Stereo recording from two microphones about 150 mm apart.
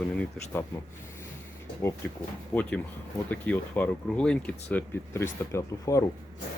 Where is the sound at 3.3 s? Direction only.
10° left (ahead or behind).